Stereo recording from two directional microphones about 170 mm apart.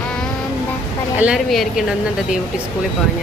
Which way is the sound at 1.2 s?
5° right (ahead or behind).